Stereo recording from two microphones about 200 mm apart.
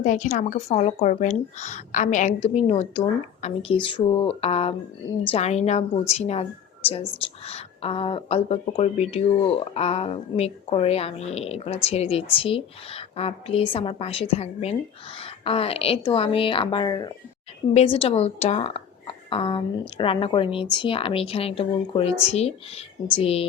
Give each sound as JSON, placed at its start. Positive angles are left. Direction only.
{"t": 0.0, "sound": "a woman's voice", "side_deg": 40}
{"t": 7.4, "sound": "a woman's voice", "side_deg": 30}